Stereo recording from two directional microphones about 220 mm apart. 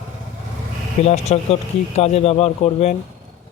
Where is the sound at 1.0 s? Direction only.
30° left (ahead or behind).